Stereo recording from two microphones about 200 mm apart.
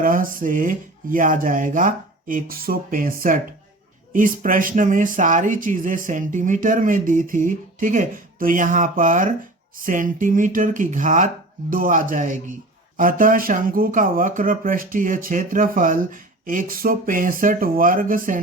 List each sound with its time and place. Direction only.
0.0 s speech: 45° right (ahead or behind)